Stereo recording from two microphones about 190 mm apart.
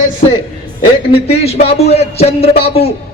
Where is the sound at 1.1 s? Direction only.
35° left (ahead or behind).